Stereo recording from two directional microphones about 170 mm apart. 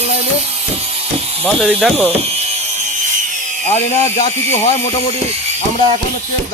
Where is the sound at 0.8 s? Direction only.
35° right (ahead or behind).